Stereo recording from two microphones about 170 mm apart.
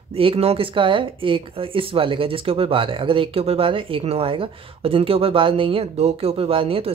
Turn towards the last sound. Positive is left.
turn(degrees=-35)  # may be behind; listen again after turning